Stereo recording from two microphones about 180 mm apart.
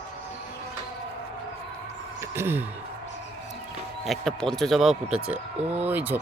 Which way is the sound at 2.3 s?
15° right (ahead or behind).